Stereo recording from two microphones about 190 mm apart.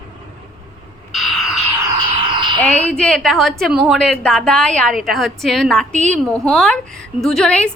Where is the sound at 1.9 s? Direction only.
25° right (ahead or behind).